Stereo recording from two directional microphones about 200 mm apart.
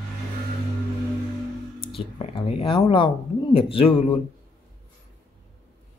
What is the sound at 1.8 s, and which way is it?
Speech, 30° left (ahead or behind).